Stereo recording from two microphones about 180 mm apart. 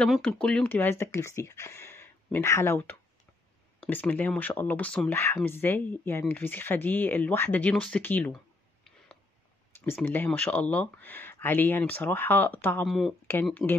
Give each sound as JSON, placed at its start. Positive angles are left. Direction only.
{"t": 0.0, "sound": "speech", "side_deg": 5}
{"t": 10.0, "sound": "speech", "side_deg": 10}